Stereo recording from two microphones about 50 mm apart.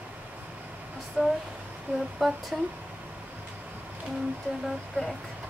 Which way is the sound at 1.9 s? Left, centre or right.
Right.